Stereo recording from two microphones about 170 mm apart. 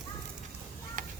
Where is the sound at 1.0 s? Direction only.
50° right (ahead or behind).